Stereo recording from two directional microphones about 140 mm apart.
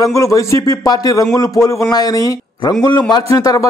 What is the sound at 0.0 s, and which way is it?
A man's voice, 25° left (ahead or behind).